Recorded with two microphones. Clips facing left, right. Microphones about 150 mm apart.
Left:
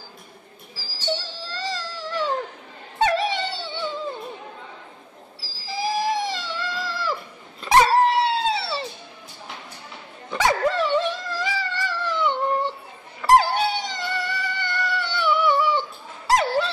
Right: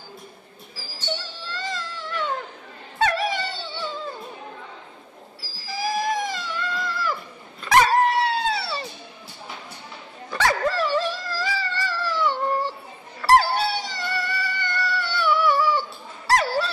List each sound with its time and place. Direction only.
1.1 s music: 35° left (ahead or behind)
3.0 s dog: 25° left (ahead or behind)
5.4 s a sound: 30° left (ahead or behind)
7.6 s dog: 30° left (ahead or behind)
10.3 s dog: 15° left (ahead or behind)
16.3 s honk: 20° left (ahead or behind)